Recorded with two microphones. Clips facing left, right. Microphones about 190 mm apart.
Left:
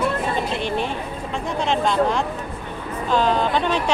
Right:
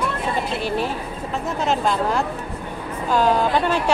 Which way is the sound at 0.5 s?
5° right (ahead or behind).